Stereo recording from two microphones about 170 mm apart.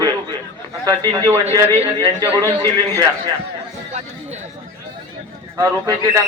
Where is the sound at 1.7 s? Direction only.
35° right (ahead or behind).